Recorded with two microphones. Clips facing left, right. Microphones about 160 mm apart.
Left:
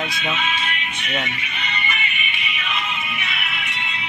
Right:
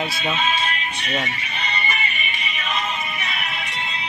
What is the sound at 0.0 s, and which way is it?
Music, 35° right (ahead or behind).